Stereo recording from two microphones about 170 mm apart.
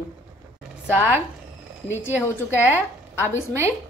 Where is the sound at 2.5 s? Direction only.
10° right (ahead or behind).